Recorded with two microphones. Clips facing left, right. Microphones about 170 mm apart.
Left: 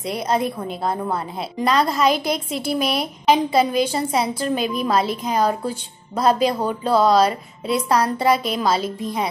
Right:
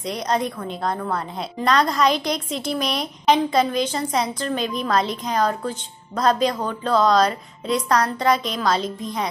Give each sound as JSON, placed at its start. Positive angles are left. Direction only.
{"t": 0.0, "sound": "a woman's voice", "side_deg": 5}
{"t": 0.9, "sound": "a woman's voice", "side_deg": 15}
{"t": 1.3, "sound": "a woman's voice", "side_deg": 5}